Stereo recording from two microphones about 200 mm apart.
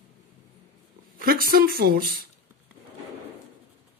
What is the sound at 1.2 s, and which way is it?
Speech, 45° right (ahead or behind).